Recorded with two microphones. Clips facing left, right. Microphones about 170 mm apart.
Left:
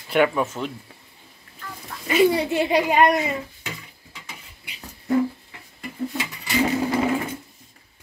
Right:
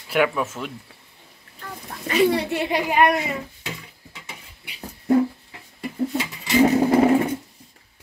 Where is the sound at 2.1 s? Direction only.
Centre (ahead or behind).